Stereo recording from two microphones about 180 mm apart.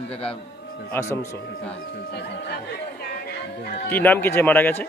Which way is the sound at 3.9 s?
10° left (ahead or behind).